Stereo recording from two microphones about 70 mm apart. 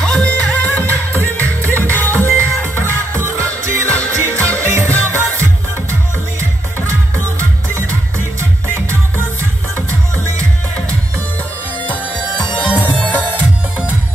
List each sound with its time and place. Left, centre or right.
0.0 s music: centre
1.4 s music: right
2.0 s music: left
2.7 s music: right
11.8 s bagpipes: left
12.5 s music: left